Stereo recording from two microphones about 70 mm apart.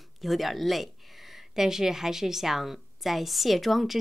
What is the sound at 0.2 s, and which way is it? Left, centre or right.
Speech, centre.